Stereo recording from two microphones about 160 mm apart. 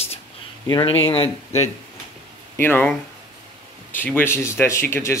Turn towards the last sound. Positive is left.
turn(degrees=15)  # may be behind; listen again after turning